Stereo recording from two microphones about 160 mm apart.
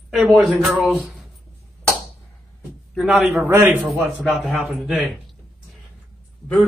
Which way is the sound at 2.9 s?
5° right (ahead or behind).